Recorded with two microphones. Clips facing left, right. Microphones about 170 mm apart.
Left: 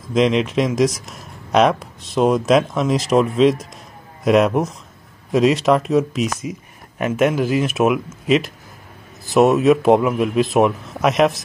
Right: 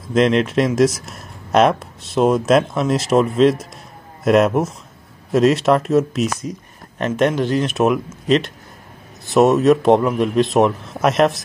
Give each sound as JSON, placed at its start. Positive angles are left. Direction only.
{"t": 0.1, "sound": "speech", "side_deg": 0}